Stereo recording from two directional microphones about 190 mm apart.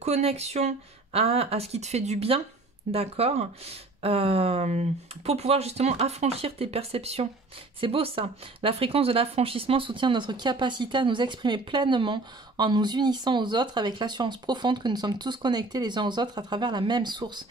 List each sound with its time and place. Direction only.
0.0 s speech: 35° right (ahead or behind)